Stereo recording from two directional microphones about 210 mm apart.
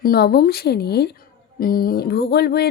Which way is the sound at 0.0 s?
45° left (ahead or behind).